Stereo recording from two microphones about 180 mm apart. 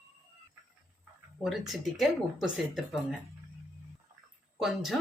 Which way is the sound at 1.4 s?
Centre (ahead or behind).